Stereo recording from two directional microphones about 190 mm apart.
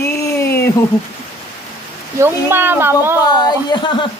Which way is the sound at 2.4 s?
10° right (ahead or behind).